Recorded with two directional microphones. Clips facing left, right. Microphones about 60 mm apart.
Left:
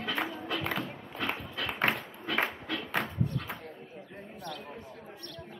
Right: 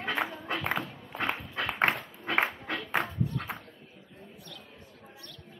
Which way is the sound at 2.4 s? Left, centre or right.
Right.